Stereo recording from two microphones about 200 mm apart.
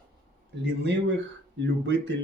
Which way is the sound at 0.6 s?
60° right (ahead or behind).